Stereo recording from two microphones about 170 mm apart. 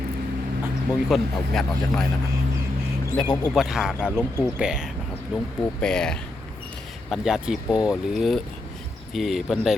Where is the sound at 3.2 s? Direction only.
5° left (ahead or behind).